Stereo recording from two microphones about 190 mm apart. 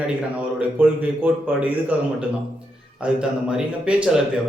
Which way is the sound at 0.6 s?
10° right (ahead or behind).